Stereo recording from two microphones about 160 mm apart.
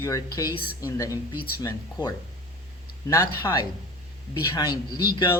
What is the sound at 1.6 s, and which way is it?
Speech, 25° left (ahead or behind).